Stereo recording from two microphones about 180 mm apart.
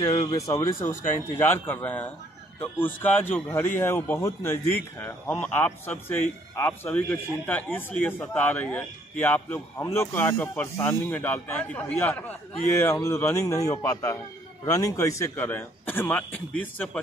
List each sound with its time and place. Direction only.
0.1 s speech: 40° left (ahead or behind)
0.4 s speech: 15° left (ahead or behind)